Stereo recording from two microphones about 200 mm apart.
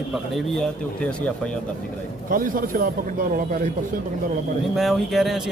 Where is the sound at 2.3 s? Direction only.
45° right (ahead or behind).